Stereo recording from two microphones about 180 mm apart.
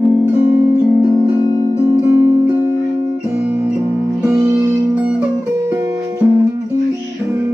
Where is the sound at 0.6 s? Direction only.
15° right (ahead or behind).